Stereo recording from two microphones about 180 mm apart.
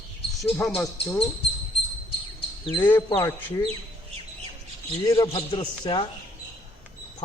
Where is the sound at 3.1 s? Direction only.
20° left (ahead or behind).